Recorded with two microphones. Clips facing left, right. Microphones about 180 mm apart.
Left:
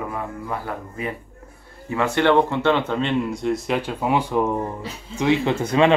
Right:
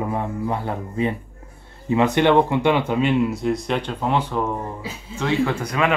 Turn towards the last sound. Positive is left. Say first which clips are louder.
# left 3 dB
turn(degrees=25)  # may be behind; listen again after turning